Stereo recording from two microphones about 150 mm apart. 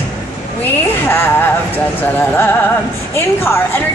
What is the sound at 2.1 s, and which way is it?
A woman's voice, 15° left (ahead or behind).